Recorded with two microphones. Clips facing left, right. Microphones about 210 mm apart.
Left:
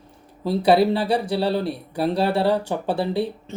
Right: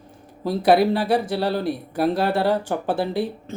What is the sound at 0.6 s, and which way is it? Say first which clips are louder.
Speech: even; 25° left (ahead or behind).